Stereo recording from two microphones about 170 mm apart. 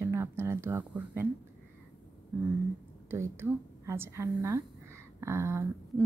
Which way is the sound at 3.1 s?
15° right (ahead or behind).